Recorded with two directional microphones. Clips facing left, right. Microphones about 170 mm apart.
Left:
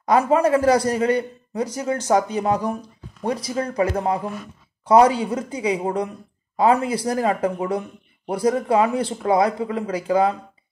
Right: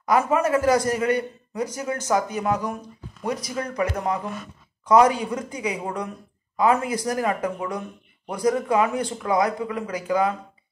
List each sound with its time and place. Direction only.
0.0 s a woman's voice: 30° left (ahead or behind)